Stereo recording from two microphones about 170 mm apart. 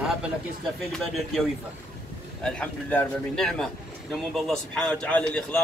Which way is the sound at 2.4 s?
5° left (ahead or behind).